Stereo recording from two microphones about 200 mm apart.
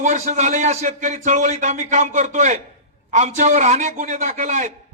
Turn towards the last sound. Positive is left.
turn(degrees=-35)  # may be behind; listen again after turning